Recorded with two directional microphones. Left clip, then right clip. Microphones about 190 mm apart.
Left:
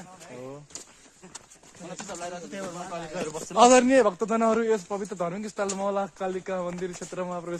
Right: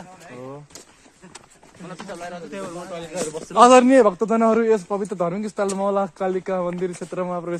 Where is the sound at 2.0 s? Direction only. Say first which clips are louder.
Right 3 dB; 45° left (ahead or behind).